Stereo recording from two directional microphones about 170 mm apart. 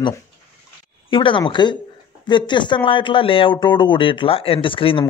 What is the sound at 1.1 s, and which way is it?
Speech, 30° left (ahead or behind).